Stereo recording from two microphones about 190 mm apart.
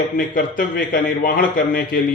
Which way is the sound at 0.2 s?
45° left (ahead or behind).